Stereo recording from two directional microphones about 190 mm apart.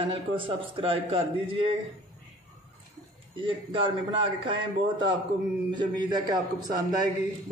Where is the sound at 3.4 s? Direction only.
25° right (ahead or behind).